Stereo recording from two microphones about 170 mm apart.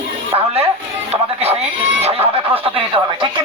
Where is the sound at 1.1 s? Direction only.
35° right (ahead or behind).